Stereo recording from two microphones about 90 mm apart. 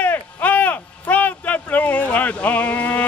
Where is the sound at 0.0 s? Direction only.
20° left (ahead or behind).